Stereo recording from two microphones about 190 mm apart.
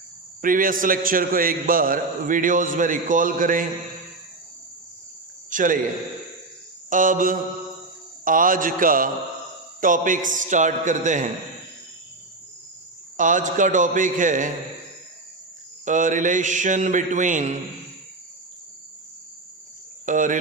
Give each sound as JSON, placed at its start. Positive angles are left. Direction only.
{"t": 0.4, "sound": "a man's voice", "side_deg": -45}
{"t": 5.5, "sound": "a sound", "side_deg": -45}
{"t": 6.9, "sound": "a man's voice", "side_deg": -45}
{"t": 13.1, "sound": "a man's voice", "side_deg": -45}
{"t": 15.8, "sound": "a man's voice", "side_deg": -40}
{"t": 20.1, "sound": "a man's voice", "side_deg": -45}